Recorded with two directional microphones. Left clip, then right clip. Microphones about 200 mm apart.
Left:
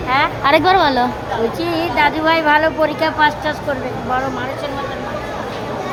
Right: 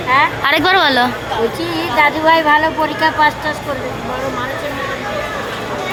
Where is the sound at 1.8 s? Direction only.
30° left (ahead or behind).